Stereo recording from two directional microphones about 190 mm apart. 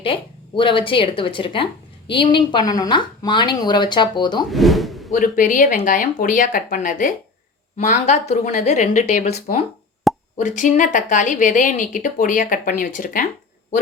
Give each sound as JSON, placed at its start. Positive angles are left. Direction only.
{"t": 0.0, "sound": "a woman's voice", "side_deg": 30}
{"t": 4.5, "sound": "speech", "side_deg": 0}
{"t": 5.1, "sound": "a woman's voice", "side_deg": 45}
{"t": 10.3, "sound": "a woman's voice", "side_deg": 40}